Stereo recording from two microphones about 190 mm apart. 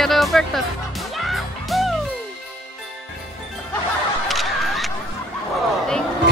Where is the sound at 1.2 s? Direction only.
Centre (ahead or behind).